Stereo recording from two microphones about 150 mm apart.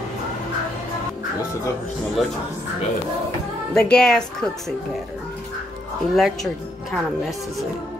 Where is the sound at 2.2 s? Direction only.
Centre (ahead or behind).